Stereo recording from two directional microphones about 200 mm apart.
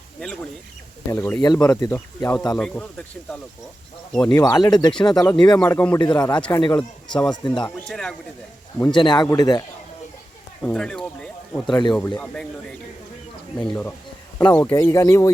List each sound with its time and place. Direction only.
1.1 s speech: 10° left (ahead or behind)
1.4 s speech: 20° left (ahead or behind)
4.1 s speech: 5° left (ahead or behind)
4.4 s speech: 20° left (ahead or behind)
7.9 s speech: 5° left (ahead or behind)
8.9 s speech: 20° left (ahead or behind)
10.6 s speech: 5° left (ahead or behind)
11.6 s speech: 20° left (ahead or behind)
11.9 s speech: 10° left (ahead or behind)
13.6 s speech: 10° left (ahead or behind)